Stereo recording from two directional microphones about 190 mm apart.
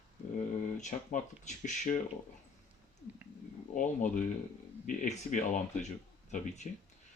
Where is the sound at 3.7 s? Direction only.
45° left (ahead or behind).